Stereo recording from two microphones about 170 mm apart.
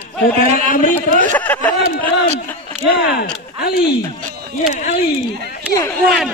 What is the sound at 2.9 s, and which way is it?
Speech, 70° left (ahead or behind).